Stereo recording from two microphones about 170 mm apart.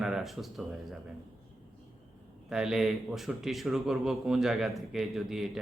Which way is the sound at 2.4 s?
5° right (ahead or behind).